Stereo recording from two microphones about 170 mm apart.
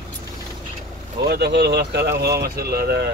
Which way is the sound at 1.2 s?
70° right (ahead or behind).